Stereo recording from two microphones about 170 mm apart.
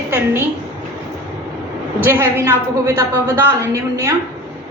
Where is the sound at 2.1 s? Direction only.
15° right (ahead or behind).